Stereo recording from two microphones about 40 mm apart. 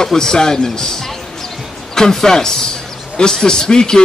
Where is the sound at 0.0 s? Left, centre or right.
Centre.